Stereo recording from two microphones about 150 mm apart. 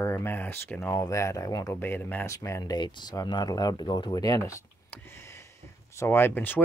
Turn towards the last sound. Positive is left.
turn(degrees=10)  # may be behind; listen again after turning